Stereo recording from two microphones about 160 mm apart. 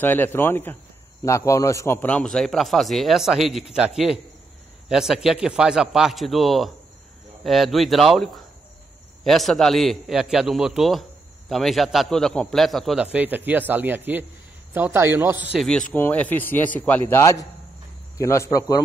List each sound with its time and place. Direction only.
0.0 s a man's voice: 10° left (ahead or behind)
2.0 s a man's voice: 10° left (ahead or behind); by 15.4 s 15° right (ahead or behind)
15.5 s a man's voice: centre (ahead or behind); by 18.8 s 20° left (ahead or behind)